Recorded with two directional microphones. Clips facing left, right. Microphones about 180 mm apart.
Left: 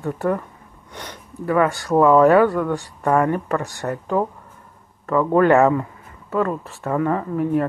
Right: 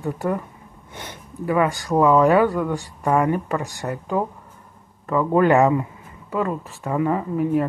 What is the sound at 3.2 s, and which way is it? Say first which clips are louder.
Speech: left 1 dB; 5° right (ahead or behind).